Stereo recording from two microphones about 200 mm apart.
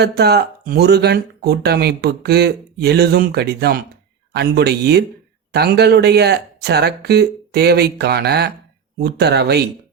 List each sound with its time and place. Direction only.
0.0 s speech: 55° right (ahead or behind)